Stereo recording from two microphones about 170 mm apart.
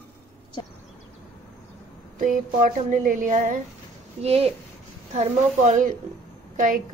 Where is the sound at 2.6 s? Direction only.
50° right (ahead or behind).